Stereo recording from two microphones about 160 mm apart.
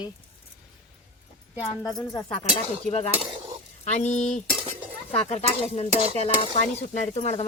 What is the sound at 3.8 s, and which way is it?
Speech, 45° left (ahead or behind).